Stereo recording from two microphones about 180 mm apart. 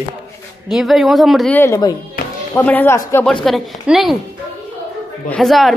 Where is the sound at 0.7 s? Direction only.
Centre (ahead or behind).